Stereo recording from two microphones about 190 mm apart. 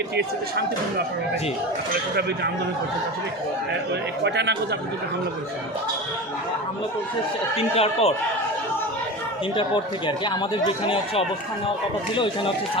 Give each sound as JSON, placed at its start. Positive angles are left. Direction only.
{"t": 4.2, "sound": "speech", "side_deg": -65}
{"t": 7.5, "sound": "speech", "side_deg": 30}
{"t": 9.6, "sound": "speech", "side_deg": 25}